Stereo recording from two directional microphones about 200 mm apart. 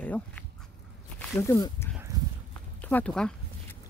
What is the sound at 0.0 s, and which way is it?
Speech, 5° left (ahead or behind).